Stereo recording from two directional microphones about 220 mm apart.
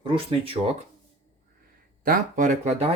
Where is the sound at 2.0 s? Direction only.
35° right (ahead or behind).